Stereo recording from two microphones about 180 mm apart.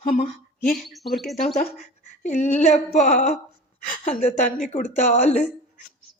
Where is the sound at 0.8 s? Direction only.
Centre (ahead or behind).